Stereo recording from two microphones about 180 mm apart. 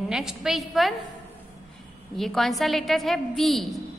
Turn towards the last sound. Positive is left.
turn(degrees=0)  # may be behind; listen again after turning